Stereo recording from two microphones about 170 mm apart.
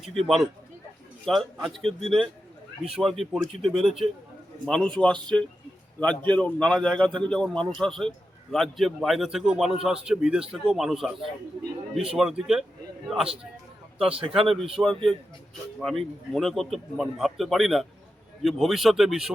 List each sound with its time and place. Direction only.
0.0 s a man's voice: centre (ahead or behind)
6.3 s a man's voice: 5° left (ahead or behind)
14.0 s a man's voice: 35° right (ahead or behind)
14.4 s a man's voice: centre (ahead or behind)